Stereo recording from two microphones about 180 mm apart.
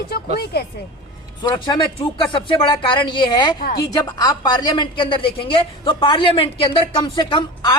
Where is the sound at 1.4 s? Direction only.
25° left (ahead or behind).